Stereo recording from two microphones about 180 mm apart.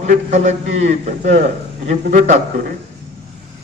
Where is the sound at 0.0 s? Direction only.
40° right (ahead or behind).